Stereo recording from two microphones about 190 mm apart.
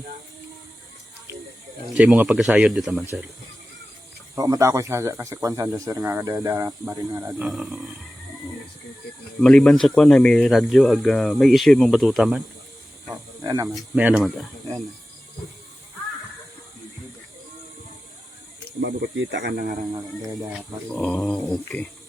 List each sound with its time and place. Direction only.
1.9 s speech: 10° right (ahead or behind)
4.4 s speech: 15° right (ahead or behind); by 7.9 s centre (ahead or behind)
9.4 s speech: 5° left (ahead or behind)
13.4 s speech: 15° right (ahead or behind)
18.8 s speech: 65° right (ahead or behind)
20.5 s speech: 5° left (ahead or behind)